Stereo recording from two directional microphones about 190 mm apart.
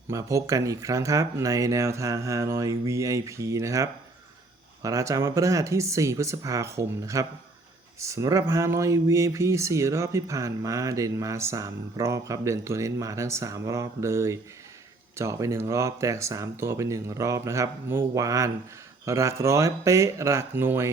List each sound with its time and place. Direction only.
0.1 s speech: 15° right (ahead or behind)